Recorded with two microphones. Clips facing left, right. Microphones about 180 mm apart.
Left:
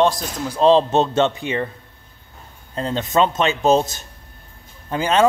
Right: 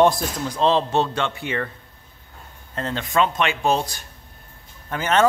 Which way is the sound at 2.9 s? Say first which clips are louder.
Left 3 dB; 20° left (ahead or behind).